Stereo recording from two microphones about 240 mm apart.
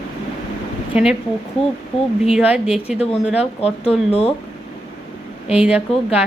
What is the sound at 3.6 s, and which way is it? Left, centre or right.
Speech, left.